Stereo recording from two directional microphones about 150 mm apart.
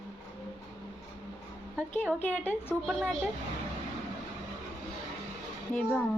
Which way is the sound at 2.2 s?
15° left (ahead or behind).